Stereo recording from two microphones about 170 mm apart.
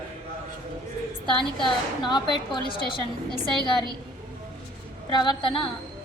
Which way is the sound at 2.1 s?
25° left (ahead or behind).